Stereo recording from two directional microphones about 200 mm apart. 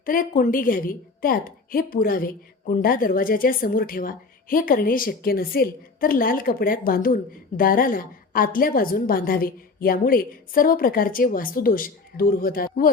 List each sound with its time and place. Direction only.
0.0 s a woman's voice: 45° left (ahead or behind)